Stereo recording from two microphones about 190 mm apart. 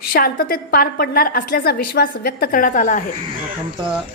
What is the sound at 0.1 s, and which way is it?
A woman's voice, 50° left (ahead or behind).